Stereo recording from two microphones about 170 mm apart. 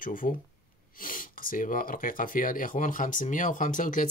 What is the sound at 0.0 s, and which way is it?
Speech, 55° left (ahead or behind).